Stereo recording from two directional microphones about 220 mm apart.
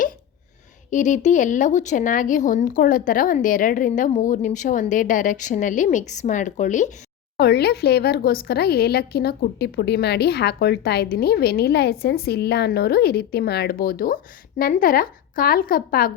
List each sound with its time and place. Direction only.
0.9 s speech: 35° left (ahead or behind)
7.3 s speech: 45° left (ahead or behind)